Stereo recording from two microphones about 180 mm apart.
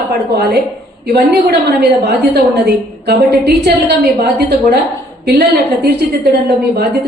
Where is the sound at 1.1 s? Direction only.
65° right (ahead or behind).